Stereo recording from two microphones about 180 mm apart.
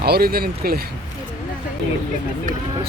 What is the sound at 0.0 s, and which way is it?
Speech, 60° right (ahead or behind).